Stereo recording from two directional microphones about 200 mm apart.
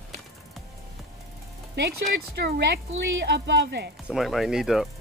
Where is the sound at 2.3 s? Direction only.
55° right (ahead or behind).